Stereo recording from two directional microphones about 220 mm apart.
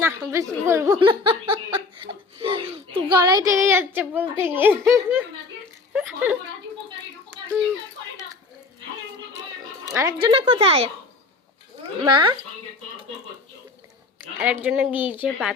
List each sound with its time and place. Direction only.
0.0 s a sound: 10° right (ahead or behind)
3.2 s a woman's voice: 20° right (ahead or behind)
9.9 s a woman's voice: 15° right (ahead or behind)
12.0 s a woman's voice: 20° right (ahead or behind)
14.2 s a woman's voice: 10° right (ahead or behind)